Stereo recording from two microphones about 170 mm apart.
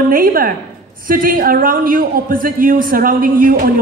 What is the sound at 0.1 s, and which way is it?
A man's voice, 60° right (ahead or behind).